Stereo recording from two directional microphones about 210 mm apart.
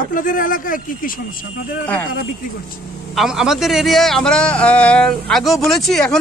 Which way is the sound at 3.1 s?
Centre (ahead or behind).